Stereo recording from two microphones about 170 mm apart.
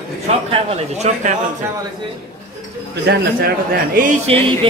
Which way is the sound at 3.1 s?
65° right (ahead or behind).